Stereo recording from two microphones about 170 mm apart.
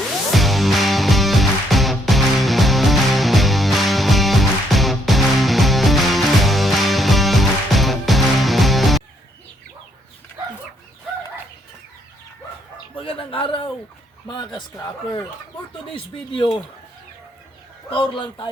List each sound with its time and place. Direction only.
0.3 s music: centre (ahead or behind)
13.0 s a sound: 30° left (ahead or behind)
14.3 s speech: 25° left (ahead or behind)
17.9 s a man's voice: 30° left (ahead or behind)